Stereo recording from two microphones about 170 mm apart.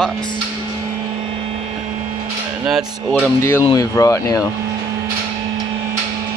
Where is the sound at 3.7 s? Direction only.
20° left (ahead or behind).